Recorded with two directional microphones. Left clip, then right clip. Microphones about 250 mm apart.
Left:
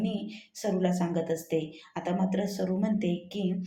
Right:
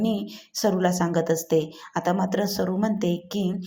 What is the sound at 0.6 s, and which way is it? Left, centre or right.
Speech, right.